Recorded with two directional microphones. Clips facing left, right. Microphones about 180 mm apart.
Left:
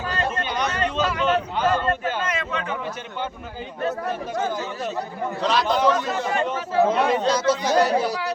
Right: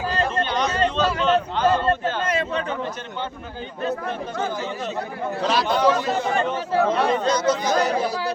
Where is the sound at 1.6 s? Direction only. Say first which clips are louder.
Right 2 dB; 30° right (ahead or behind).